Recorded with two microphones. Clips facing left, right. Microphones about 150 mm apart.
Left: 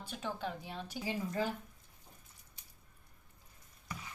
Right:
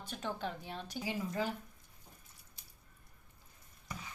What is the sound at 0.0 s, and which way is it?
Speech, 5° left (ahead or behind).